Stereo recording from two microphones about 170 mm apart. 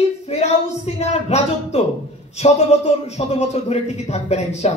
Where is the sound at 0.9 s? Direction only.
40° left (ahead or behind).